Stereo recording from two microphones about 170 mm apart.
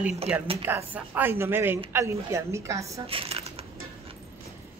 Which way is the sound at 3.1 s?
35° right (ahead or behind).